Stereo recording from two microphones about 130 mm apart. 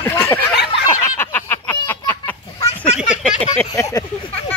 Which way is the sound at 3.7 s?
25° left (ahead or behind).